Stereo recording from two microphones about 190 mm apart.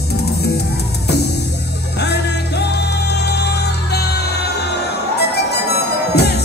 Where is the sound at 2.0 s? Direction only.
60° left (ahead or behind).